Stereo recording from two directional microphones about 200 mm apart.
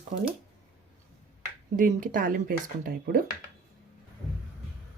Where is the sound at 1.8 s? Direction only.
45° right (ahead or behind).